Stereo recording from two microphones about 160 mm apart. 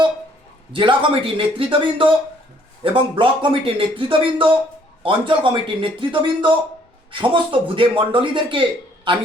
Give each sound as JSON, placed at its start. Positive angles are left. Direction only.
{"t": 0.7, "sound": "speech", "side_deg": -30}